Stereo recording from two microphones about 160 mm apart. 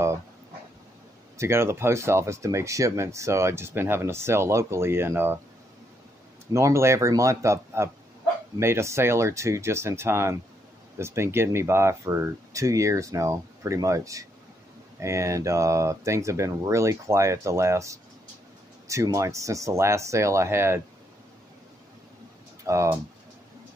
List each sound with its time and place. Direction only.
1.4 s speech: 15° right (ahead or behind)
6.5 s speech: 20° right (ahead or behind)
22.7 s speech: 20° right (ahead or behind)